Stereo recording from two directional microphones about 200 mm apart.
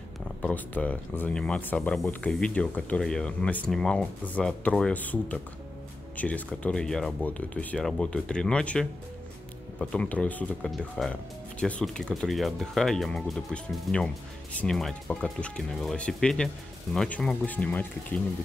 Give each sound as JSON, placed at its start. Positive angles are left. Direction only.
{"t": 0.4, "sound": "speech", "side_deg": 5}